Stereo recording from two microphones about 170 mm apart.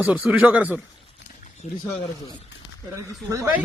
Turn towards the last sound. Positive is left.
turn(degrees=-20)  # may be behind; listen again after turning